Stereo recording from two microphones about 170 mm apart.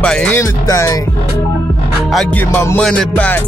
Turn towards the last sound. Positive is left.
turn(degrees=10)  # may be behind; listen again after turning